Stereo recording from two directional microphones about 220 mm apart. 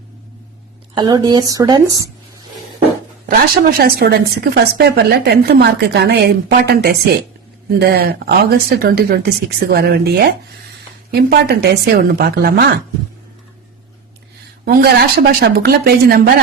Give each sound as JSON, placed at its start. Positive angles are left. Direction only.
{"t": 0.9, "sound": "speech", "side_deg": -20}
{"t": 3.2, "sound": "a woman's voice", "side_deg": -45}
{"t": 14.6, "sound": "a woman's voice", "side_deg": -45}